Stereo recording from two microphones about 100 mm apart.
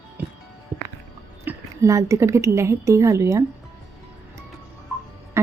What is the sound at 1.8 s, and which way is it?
Speech, 30° right (ahead or behind).